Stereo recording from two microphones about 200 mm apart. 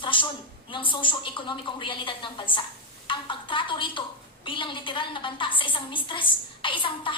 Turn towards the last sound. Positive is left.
turn(degrees=25)  # may be behind; listen again after turning